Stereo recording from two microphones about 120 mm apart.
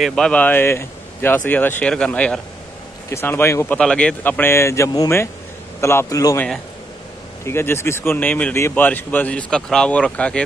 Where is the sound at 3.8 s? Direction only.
10° left (ahead or behind); by 6.4 s 30° left (ahead or behind).